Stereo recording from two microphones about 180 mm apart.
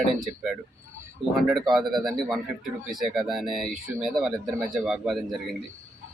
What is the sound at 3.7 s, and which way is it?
Speech, 45° right (ahead or behind).